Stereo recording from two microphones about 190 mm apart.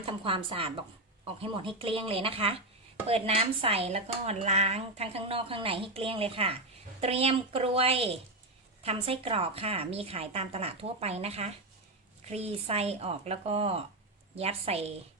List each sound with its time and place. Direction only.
0.0 s a woman's voice: 30° right (ahead or behind)